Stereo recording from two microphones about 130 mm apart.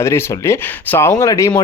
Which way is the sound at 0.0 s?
20° left (ahead or behind).